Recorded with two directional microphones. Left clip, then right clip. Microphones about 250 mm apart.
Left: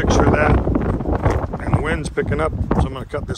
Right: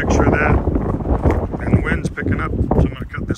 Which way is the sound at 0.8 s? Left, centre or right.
Right.